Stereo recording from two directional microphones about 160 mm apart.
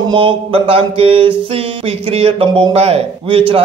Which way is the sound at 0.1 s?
35° right (ahead or behind).